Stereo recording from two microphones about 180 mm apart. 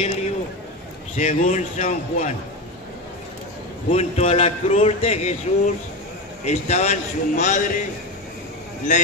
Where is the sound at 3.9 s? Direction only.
35° left (ahead or behind).